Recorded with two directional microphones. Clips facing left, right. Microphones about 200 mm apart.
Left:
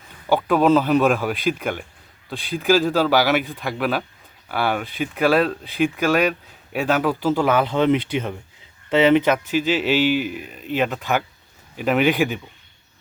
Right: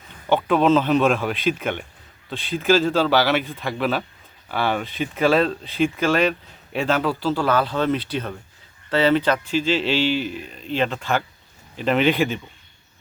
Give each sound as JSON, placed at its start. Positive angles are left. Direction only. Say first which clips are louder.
{"t": 0.3, "sound": "speech", "louder": "left 1 dB", "side_deg": 5}
{"t": 2.6, "sound": "speech", "louder": "even", "side_deg": 10}